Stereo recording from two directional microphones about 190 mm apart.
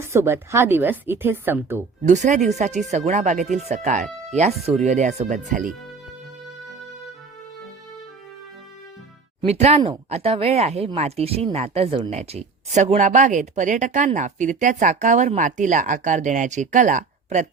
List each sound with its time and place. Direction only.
0.0 s a woman's voice: 15° right (ahead or behind)
2.0 s speech: 40° right (ahead or behind)
9.4 s speech: 35° right (ahead or behind)